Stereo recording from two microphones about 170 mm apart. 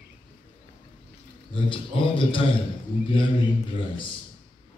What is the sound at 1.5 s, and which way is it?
Speech, 30° left (ahead or behind).